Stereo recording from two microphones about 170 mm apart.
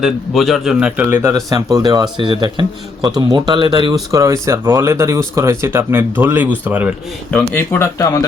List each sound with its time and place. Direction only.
0.0 s a man's voice: centre (ahead or behind)
1.5 s a man's voice: 25° right (ahead or behind)
4.1 s speech: 20° right (ahead or behind)
7.5 s speech: 15° left (ahead or behind)